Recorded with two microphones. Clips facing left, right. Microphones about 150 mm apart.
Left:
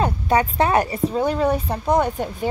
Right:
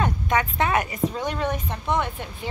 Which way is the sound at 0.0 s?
35° left (ahead or behind).